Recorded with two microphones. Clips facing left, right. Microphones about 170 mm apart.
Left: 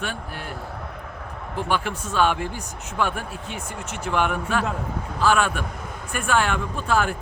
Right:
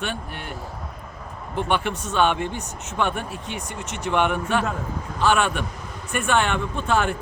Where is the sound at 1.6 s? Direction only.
Centre (ahead or behind).